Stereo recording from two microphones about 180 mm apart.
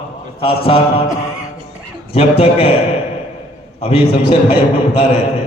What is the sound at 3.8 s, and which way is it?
Speech, 30° left (ahead or behind).